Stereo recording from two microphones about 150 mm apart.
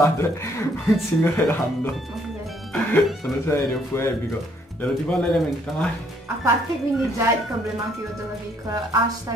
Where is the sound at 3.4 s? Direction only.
15° left (ahead or behind).